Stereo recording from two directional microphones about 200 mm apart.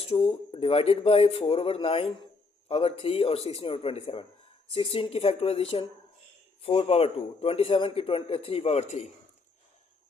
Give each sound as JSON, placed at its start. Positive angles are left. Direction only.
{"t": 0.0, "sound": "a man's voice", "side_deg": 30}